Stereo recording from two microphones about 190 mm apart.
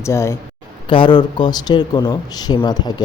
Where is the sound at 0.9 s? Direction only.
25° left (ahead or behind).